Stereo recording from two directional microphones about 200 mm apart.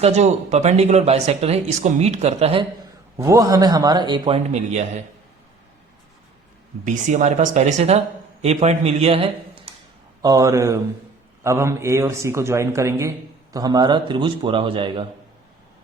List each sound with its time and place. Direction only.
0.0 s speech: 35° right (ahead or behind)
3.2 s a man's voice: 15° right (ahead or behind)
4.4 s speech: 35° right (ahead or behind)
6.8 s speech: 40° right (ahead or behind)
10.2 s a man's voice: 20° right (ahead or behind)